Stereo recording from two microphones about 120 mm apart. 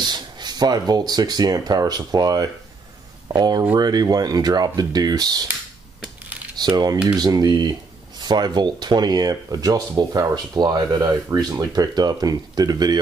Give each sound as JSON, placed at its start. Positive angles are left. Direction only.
{"t": 0.0, "sound": "speech", "side_deg": -35}
{"t": 6.6, "sound": "speech", "side_deg": -35}